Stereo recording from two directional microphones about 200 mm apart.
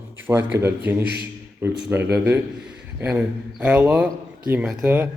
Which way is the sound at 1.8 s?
10° right (ahead or behind).